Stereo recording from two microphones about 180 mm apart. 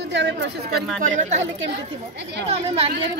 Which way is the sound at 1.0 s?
45° right (ahead or behind).